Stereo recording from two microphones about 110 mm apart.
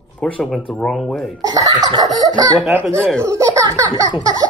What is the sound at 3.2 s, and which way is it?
Speech, 30° right (ahead or behind).